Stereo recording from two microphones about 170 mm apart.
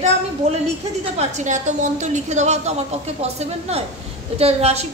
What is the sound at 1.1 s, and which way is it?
A woman's voice, 45° right (ahead or behind).